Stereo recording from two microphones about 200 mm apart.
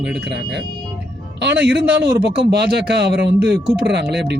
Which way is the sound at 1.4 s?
60° right (ahead or behind).